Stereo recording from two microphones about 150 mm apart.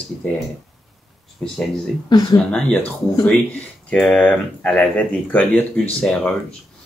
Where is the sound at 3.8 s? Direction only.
5° left (ahead or behind).